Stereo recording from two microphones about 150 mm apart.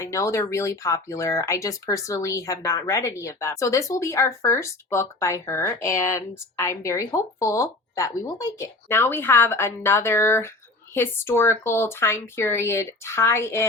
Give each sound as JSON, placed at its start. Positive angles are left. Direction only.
{"t": 0.0, "sound": "speech", "side_deg": 20}